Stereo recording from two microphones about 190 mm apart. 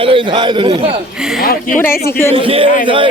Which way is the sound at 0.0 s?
25° right (ahead or behind).